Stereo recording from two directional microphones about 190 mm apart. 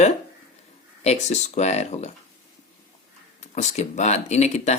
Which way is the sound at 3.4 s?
35° left (ahead or behind).